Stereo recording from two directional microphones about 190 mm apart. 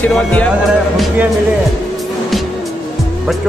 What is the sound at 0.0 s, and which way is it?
Speech, 5° left (ahead or behind).